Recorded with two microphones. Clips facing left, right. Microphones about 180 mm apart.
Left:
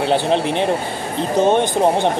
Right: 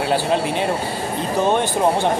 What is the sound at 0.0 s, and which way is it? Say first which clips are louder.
Speech: left 2 dB; 20° left (ahead or behind).